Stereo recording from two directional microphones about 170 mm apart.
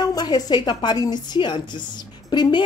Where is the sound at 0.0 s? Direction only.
25° left (ahead or behind).